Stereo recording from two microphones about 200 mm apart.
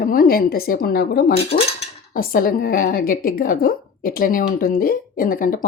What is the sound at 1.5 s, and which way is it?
Cutlery, 40° left (ahead or behind).